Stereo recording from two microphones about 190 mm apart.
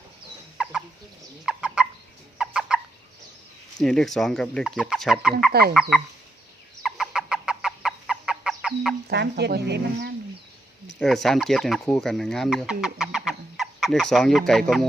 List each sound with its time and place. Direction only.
0.5 s fowl: 5° right (ahead or behind)
3.8 s speech: 5° left (ahead or behind)
5.5 s speech: 55° right (ahead or behind)
6.8 s fowl: centre (ahead or behind)
9.0 s speech: 60° right (ahead or behind)
11.0 s speech: centre (ahead or behind)